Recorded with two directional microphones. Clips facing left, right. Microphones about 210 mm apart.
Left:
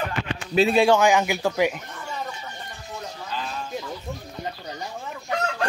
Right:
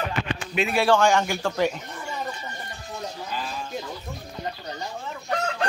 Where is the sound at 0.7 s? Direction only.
10° left (ahead or behind).